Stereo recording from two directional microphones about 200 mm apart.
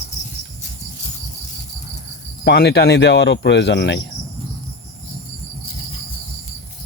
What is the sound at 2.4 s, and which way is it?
Speech, 55° left (ahead or behind).